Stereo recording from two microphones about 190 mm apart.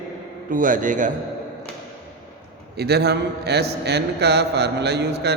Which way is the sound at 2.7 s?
60° right (ahead or behind).